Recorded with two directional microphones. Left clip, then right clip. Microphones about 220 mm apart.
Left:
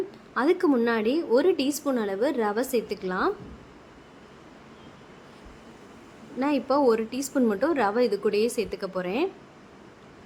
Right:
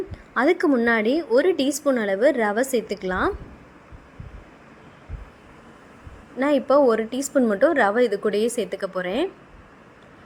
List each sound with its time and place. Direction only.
0.3 s a woman's voice: 15° right (ahead or behind)
6.4 s a woman's voice: 15° right (ahead or behind)